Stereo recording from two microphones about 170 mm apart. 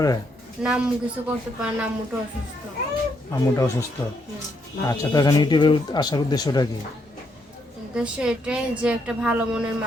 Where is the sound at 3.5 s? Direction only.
20° left (ahead or behind).